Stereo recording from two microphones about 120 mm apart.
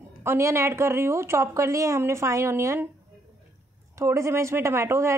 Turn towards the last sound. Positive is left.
turn(degrees=-25)  # may be behind; listen again after turning